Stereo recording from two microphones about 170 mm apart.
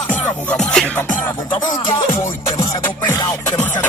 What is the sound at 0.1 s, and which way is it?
Music, 10° left (ahead or behind).